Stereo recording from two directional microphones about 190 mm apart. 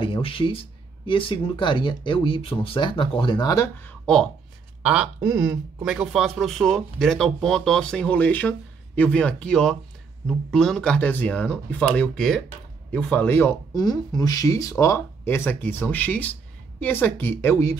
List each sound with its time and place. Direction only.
0.0 s speech: 30° left (ahead or behind)